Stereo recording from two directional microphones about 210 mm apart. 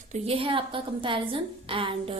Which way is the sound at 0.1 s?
25° right (ahead or behind).